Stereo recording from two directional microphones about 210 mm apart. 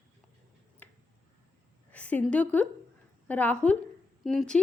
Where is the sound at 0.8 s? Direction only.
5° left (ahead or behind).